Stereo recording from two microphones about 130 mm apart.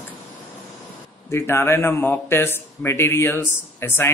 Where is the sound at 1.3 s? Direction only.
20° left (ahead or behind).